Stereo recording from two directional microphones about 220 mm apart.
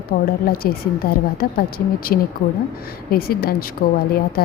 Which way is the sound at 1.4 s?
45° left (ahead or behind).